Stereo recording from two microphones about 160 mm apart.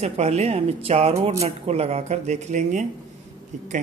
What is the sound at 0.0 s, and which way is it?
Speech, 40° right (ahead or behind).